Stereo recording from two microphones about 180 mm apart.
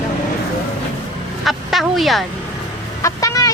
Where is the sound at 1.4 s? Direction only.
Centre (ahead or behind).